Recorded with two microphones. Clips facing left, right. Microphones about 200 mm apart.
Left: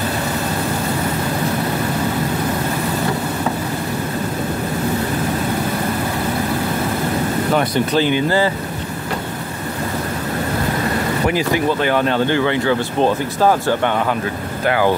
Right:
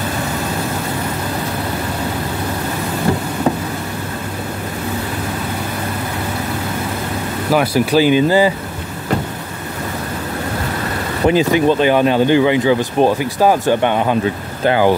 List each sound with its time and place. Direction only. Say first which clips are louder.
7.5 s speech: right 5 dB; 5° right (ahead or behind)
11.2 s speech: right 7 dB; 20° right (ahead or behind)